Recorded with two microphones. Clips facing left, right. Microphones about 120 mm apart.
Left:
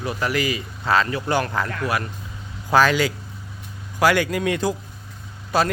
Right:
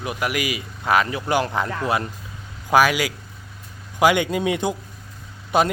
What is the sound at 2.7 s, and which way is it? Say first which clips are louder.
Speech: even; 10° right (ahead or behind).